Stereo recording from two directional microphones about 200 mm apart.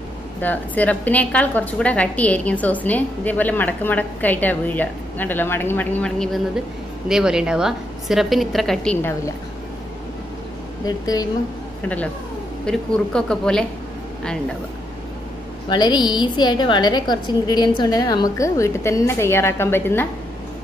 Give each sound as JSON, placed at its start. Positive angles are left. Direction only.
{"t": 0.4, "sound": "a woman's voice", "side_deg": 10}
{"t": 10.9, "sound": "a woman's voice", "side_deg": 20}
{"t": 12.6, "sound": "a woman's voice", "side_deg": 5}
{"t": 15.7, "sound": "a woman's voice", "side_deg": 20}